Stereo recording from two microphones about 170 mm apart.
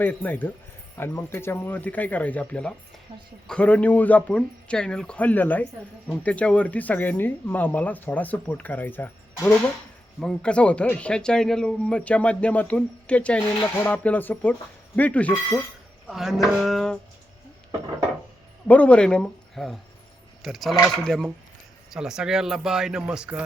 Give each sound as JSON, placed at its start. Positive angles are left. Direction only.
{"t": 0.0, "sound": "speech", "side_deg": 10}
{"t": 3.1, "sound": "a woman's voice", "side_deg": -30}
{"t": 3.4, "sound": "speech", "side_deg": 5}
{"t": 18.7, "sound": "speech", "side_deg": 10}